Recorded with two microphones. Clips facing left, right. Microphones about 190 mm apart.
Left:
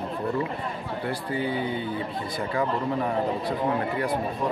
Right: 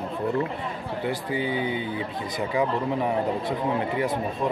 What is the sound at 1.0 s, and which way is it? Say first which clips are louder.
Speech: right 1 dB; 15° right (ahead or behind).